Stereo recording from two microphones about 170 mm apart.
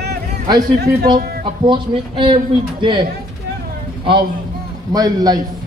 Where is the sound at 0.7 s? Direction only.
65° right (ahead or behind).